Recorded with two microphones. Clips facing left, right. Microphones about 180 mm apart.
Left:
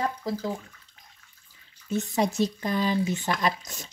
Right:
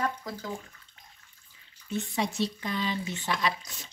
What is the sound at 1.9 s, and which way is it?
Speech, 45° left (ahead or behind).